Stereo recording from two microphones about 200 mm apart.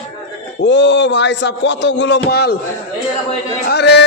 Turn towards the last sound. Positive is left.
turn(degrees=55)  # may be behind; listen again after turning